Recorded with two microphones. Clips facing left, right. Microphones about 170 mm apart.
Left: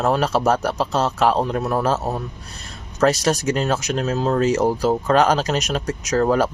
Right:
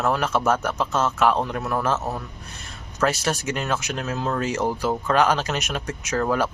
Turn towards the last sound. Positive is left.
turn(degrees=40)  # may be behind; listen again after turning